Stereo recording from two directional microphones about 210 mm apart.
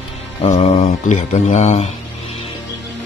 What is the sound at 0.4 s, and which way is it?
A man's voice, 35° left (ahead or behind).